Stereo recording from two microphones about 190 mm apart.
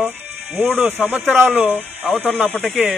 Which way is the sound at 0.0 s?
10° right (ahead or behind).